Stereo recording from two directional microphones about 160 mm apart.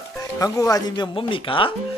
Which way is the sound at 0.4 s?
20° left (ahead or behind).